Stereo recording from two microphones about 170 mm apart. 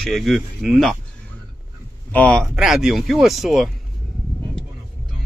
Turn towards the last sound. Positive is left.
turn(degrees=0)  # may be behind; listen again after turning